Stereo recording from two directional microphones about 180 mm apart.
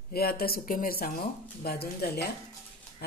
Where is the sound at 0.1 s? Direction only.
55° left (ahead or behind).